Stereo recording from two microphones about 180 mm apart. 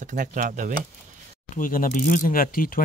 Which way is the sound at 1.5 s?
50° left (ahead or behind).